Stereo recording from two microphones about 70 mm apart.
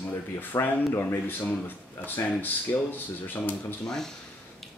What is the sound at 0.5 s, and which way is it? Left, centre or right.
Speech, left.